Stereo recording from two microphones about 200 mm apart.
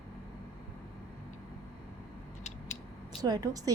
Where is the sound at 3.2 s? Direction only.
20° right (ahead or behind).